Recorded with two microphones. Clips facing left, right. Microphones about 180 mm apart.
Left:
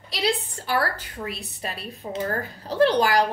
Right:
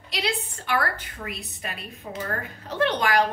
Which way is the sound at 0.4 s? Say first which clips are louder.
Left 1 dB; 35° left (ahead or behind).